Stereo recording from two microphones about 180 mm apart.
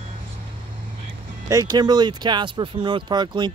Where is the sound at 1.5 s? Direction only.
20° right (ahead or behind).